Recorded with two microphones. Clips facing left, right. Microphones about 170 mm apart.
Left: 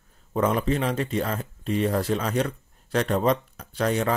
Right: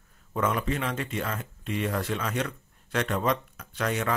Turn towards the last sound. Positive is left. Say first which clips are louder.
# left 5 dB
turn(degrees=35)  # may be behind; listen again after turning